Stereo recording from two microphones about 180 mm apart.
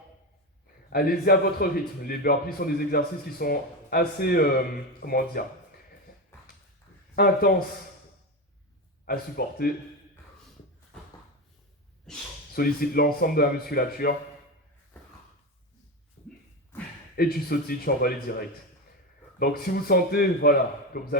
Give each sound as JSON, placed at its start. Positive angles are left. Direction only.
{"t": 0.9, "sound": "a man's voice", "side_deg": 55}
{"t": 9.0, "sound": "a man's voice", "side_deg": 55}
{"t": 12.5, "sound": "a man's voice", "side_deg": 55}
{"t": 17.2, "sound": "a man's voice", "side_deg": 55}